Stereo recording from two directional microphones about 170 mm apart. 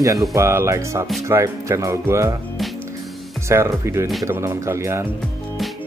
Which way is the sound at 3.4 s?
15° right (ahead or behind).